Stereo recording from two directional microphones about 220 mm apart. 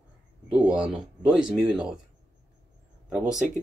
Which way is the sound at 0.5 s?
5° right (ahead or behind).